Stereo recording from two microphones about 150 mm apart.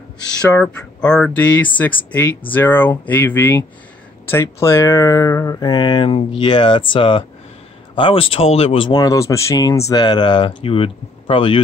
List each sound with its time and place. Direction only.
0.5 s speech: 10° left (ahead or behind); by 11.6 s 35° left (ahead or behind)